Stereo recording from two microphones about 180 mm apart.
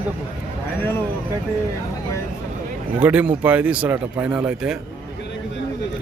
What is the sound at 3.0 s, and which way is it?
Speech, 10° right (ahead or behind).